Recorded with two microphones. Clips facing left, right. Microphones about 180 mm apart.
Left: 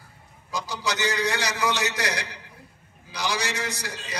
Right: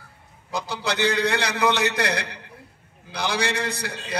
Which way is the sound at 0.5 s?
60° right (ahead or behind).